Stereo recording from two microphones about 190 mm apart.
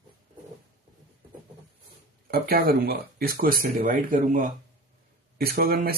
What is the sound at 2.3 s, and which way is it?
Speech, 50° right (ahead or behind).